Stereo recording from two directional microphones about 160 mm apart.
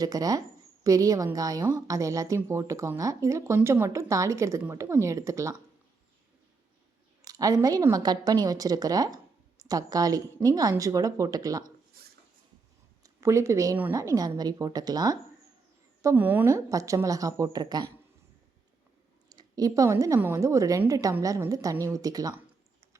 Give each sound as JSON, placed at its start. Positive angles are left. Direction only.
{"t": 0.0, "sound": "a woman's voice", "side_deg": -25}
{"t": 7.2, "sound": "a woman's voice", "side_deg": -20}
{"t": 12.0, "sound": "a sound", "side_deg": -65}
{"t": 13.0, "sound": "a woman's voice", "side_deg": -20}
{"t": 19.3, "sound": "a woman's voice", "side_deg": -25}